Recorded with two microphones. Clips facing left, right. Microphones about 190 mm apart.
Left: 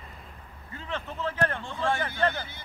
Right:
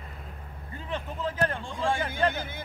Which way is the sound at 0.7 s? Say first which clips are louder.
Even; 10° right (ahead or behind).